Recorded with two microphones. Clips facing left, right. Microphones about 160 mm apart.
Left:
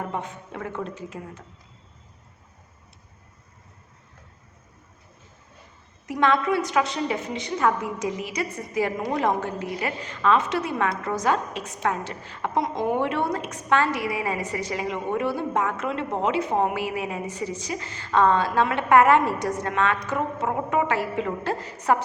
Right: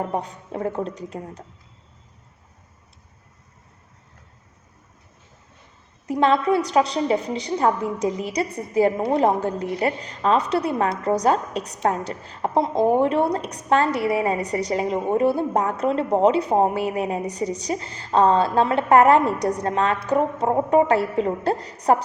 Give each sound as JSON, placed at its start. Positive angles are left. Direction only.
{"t": 0.1, "sound": "a woman's voice", "side_deg": -35}
{"t": 6.1, "sound": "a woman's voice", "side_deg": -35}